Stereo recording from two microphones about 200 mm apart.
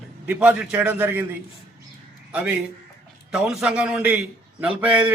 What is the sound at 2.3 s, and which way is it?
A man's voice, 5° right (ahead or behind).